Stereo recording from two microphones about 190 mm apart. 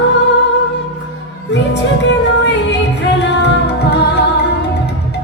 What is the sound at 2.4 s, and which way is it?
Music, 65° left (ahead or behind).